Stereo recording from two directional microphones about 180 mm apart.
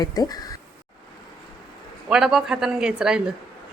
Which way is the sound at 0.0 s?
20° left (ahead or behind).